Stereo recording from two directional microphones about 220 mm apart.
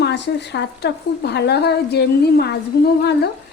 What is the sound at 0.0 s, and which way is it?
A woman's voice, 50° left (ahead or behind).